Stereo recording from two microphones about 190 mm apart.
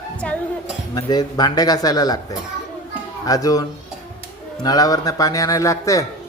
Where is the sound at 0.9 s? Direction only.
20° left (ahead or behind).